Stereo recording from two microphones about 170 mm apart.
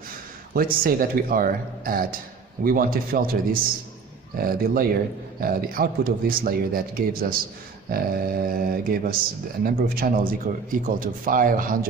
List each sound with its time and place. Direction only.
0.6 s a man's voice: 55° right (ahead or behind)